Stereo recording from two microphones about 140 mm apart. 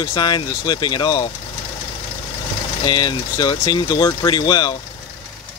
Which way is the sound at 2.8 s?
30° left (ahead or behind).